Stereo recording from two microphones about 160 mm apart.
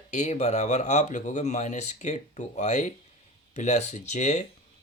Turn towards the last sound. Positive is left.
turn(degrees=45)  # may be behind; listen again after turning